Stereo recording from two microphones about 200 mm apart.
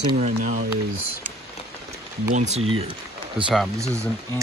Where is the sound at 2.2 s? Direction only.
35° right (ahead or behind).